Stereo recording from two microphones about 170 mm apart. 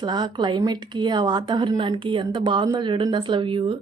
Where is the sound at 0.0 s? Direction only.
25° right (ahead or behind).